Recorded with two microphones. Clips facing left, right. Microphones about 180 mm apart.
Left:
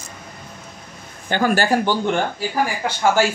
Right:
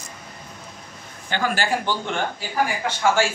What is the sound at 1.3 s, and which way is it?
Speech, 40° left (ahead or behind).